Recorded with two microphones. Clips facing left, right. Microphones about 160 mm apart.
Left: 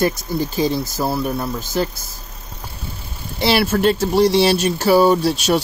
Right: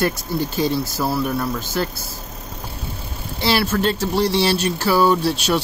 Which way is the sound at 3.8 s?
15° left (ahead or behind).